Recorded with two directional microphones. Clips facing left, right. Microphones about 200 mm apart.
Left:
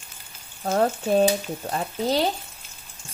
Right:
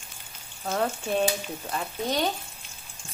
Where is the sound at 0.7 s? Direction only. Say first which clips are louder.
Left 6 dB; 40° left (ahead or behind).